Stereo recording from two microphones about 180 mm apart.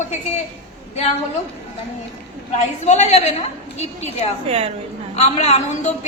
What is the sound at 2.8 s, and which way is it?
Speech, 40° left (ahead or behind).